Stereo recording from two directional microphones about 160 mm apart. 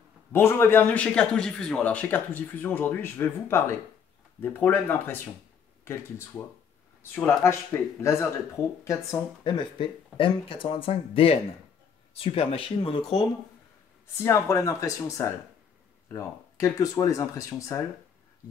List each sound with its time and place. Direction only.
0.3 s speech: 15° left (ahead or behind)
14.1 s speech: 15° left (ahead or behind)